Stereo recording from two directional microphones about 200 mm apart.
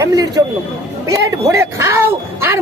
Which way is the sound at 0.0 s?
15° right (ahead or behind).